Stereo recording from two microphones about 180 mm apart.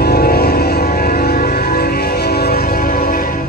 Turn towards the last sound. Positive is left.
turn(degrees=55)  # may be behind; listen again after turning